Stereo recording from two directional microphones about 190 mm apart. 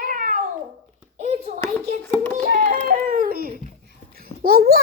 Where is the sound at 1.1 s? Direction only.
35° right (ahead or behind).